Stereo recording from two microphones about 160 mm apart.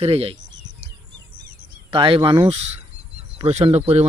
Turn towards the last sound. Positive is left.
turn(degrees=-40)  # may be behind; listen again after turning